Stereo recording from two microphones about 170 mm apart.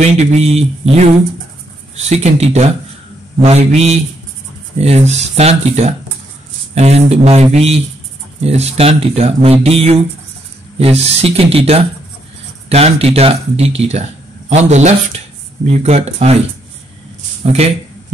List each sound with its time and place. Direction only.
0.0 s speech: 40° right (ahead or behind)
8.5 s speech: 35° right (ahead or behind)
17.4 s speech: 40° right (ahead or behind)